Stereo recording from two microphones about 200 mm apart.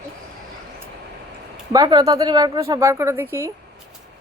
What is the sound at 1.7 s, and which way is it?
Speech, 20° right (ahead or behind).